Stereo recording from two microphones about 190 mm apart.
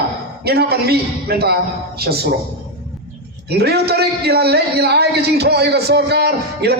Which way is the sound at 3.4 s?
60° right (ahead or behind).